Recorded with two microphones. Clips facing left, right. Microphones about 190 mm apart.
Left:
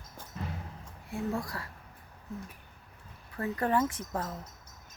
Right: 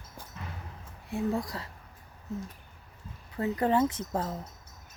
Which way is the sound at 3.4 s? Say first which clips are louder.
Right 3 dB; 20° right (ahead or behind).